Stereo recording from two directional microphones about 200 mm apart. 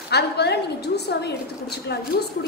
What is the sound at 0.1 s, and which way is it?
A woman's voice, 55° left (ahead or behind).